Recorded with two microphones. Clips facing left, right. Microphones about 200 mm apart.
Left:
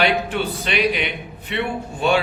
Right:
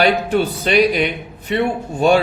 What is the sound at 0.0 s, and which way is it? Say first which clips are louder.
A man's voice: right 5 dB; 40° right (ahead or behind).